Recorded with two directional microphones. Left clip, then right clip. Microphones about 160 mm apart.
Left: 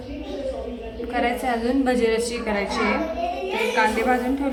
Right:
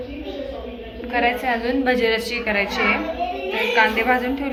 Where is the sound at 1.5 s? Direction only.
25° left (ahead or behind).